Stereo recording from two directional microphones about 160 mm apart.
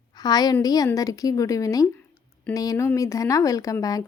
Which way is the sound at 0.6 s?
25° left (ahead or behind).